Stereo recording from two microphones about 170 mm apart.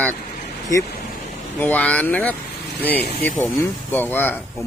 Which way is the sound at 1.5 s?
10° left (ahead or behind).